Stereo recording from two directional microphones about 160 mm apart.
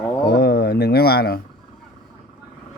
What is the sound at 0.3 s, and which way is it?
Speech, 80° left.